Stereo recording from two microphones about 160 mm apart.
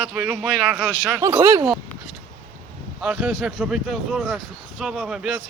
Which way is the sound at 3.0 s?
5° right (ahead or behind).